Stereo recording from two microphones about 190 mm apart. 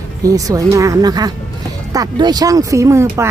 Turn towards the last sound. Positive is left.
turn(degrees=-15)  # may be behind; listen again after turning